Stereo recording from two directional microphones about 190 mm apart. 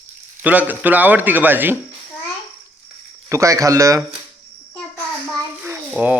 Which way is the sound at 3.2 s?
15° right (ahead or behind).